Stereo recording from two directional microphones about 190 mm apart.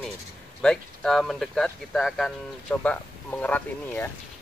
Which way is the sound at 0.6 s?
Centre (ahead or behind).